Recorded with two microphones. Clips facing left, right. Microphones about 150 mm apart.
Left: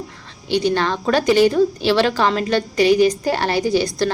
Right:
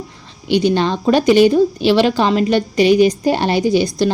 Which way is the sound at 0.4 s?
15° right (ahead or behind).